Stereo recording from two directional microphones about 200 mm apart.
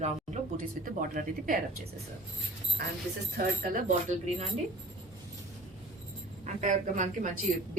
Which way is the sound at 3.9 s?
35° right (ahead or behind).